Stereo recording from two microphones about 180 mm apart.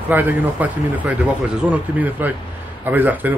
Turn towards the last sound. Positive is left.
turn(degrees=-10)  # may be behind; listen again after turning